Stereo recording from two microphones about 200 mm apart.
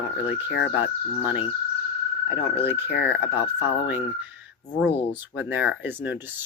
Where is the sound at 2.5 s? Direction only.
10° right (ahead or behind).